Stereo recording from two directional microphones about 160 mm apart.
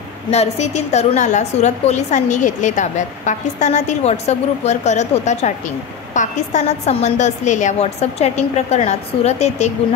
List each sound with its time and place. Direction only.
0.3 s a woman's voice: 45° left (ahead or behind)